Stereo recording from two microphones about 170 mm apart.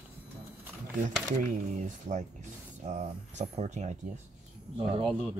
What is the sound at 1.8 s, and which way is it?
Speech, 45° right (ahead or behind).